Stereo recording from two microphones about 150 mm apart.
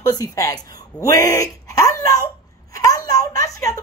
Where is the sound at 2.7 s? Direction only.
20° left (ahead or behind).